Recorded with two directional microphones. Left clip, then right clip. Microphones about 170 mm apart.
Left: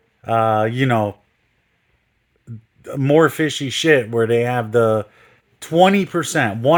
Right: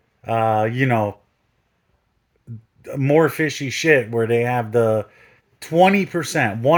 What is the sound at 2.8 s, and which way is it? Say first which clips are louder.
Speech: left 2 dB; 15° left (ahead or behind).